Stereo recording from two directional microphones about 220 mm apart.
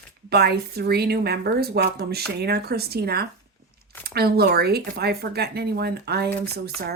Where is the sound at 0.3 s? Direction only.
45° right (ahead or behind).